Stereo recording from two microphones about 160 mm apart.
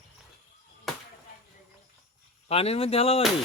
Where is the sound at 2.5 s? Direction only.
40° left (ahead or behind).